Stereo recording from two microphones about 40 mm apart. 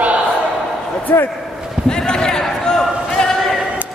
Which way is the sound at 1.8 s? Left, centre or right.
Centre.